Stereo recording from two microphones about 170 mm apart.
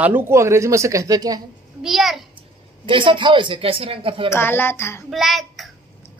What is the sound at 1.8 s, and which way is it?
Speech, centre (ahead or behind).